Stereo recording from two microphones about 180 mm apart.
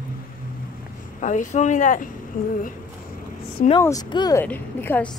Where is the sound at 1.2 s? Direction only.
45° left (ahead or behind).